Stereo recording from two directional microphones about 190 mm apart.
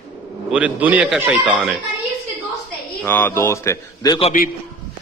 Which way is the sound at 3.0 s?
10° left (ahead or behind).